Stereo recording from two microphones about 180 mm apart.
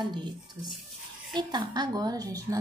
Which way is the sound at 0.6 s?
15° right (ahead or behind).